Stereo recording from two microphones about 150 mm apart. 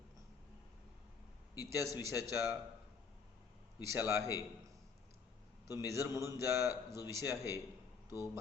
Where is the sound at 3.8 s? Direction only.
20° right (ahead or behind).